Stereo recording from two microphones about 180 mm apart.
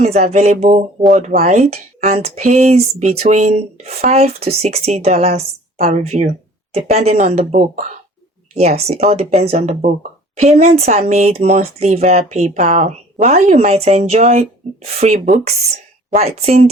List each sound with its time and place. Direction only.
0.0 s speech: 40° right (ahead or behind)